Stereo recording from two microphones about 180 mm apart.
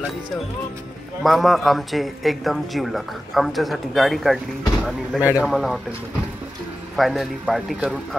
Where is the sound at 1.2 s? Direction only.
Centre (ahead or behind).